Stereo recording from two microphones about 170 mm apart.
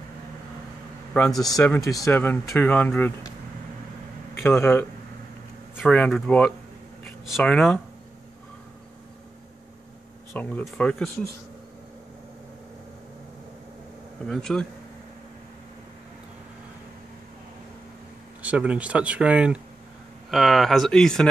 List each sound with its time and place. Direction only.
1.4 s speech: 20° left (ahead or behind)
4.4 s a man's voice: 10° left (ahead or behind)
10.3 s speech: 10° left (ahead or behind)
14.2 s speech: 5° left (ahead or behind)
18.4 s speech: 10° right (ahead or behind)